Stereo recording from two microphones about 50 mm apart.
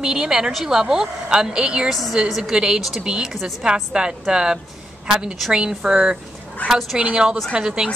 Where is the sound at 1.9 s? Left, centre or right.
Centre.